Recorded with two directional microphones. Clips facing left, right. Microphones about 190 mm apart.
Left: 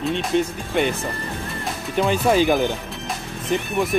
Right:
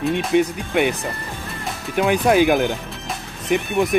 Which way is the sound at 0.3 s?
10° right (ahead or behind).